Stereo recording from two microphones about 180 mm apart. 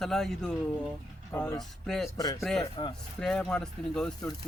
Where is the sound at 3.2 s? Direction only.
5° left (ahead or behind).